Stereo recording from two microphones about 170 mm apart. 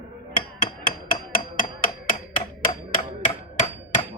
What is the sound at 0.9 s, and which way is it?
Hammer, 55° left (ahead or behind).